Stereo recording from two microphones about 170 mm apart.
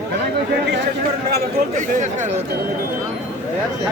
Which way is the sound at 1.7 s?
45° right (ahead or behind).